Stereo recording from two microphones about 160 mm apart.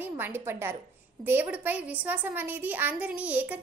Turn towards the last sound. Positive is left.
turn(degrees=-10)  # may be behind; listen again after turning